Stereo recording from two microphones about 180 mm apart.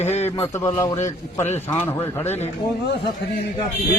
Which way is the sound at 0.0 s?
35° left (ahead or behind).